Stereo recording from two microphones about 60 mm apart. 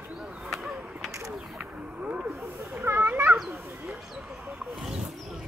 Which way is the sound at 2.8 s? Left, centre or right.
Right.